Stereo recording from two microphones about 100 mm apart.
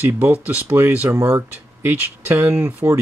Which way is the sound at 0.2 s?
20° right (ahead or behind).